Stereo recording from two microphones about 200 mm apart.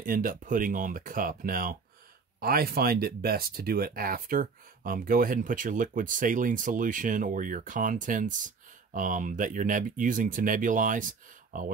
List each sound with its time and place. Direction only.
0.0 s speech: 45° right (ahead or behind)